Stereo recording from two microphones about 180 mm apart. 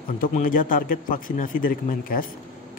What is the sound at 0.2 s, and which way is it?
A man's voice, 45° left (ahead or behind).